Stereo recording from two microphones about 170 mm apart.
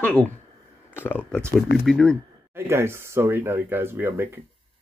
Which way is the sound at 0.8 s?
10° left (ahead or behind).